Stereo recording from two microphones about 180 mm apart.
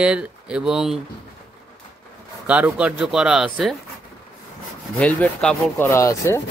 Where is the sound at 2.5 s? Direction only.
5° right (ahead or behind).